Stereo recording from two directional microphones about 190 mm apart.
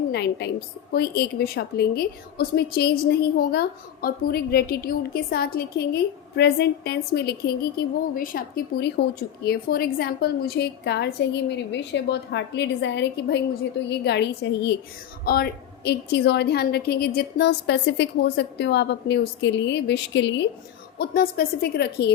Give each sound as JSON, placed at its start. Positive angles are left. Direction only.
{"t": 0.1, "sound": "a woman's voice", "side_deg": 60}
{"t": 21.0, "sound": "a woman's voice", "side_deg": 55}